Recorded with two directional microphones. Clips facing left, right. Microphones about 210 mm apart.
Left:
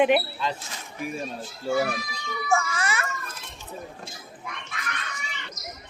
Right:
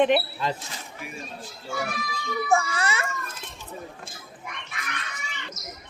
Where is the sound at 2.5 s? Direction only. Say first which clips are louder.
Right 1 dB; 30° right (ahead or behind).